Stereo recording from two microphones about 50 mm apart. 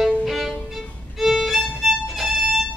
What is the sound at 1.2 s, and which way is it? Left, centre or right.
Violin, centre.